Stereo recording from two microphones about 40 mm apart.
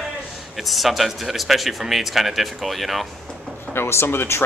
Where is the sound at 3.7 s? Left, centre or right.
Left.